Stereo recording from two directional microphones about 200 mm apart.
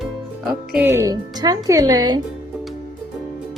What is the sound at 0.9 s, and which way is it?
Speech, 15° right (ahead or behind).